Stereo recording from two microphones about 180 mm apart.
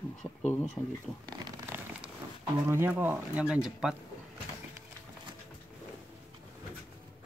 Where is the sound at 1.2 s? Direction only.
20° right (ahead or behind).